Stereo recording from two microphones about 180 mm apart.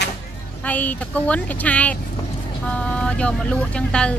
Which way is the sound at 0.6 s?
10° left (ahead or behind).